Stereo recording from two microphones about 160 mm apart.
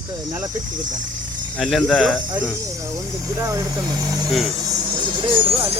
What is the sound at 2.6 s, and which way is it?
Speech, 20° right (ahead or behind).